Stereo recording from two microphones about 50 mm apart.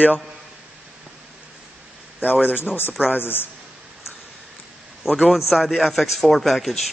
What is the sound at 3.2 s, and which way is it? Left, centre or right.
Speech, left.